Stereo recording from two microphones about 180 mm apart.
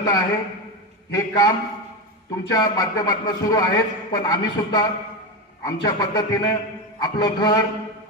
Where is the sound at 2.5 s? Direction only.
20° left (ahead or behind).